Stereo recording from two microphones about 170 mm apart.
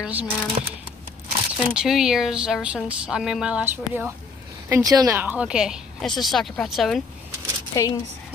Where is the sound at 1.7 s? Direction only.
5° right (ahead or behind).